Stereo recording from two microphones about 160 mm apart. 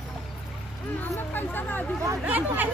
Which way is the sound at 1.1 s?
10° left (ahead or behind).